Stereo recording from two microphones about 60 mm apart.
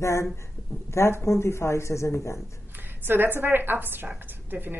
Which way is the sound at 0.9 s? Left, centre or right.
Left.